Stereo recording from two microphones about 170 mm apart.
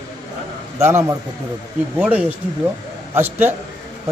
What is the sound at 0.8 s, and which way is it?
A man's voice, 15° right (ahead or behind).